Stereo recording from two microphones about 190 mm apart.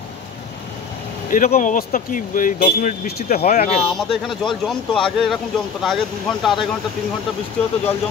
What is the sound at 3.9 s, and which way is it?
Speech, centre (ahead or behind).